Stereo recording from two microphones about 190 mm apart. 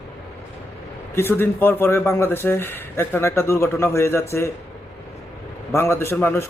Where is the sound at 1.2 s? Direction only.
10° left (ahead or behind).